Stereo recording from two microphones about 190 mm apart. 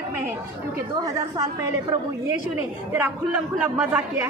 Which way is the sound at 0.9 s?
20° right (ahead or behind).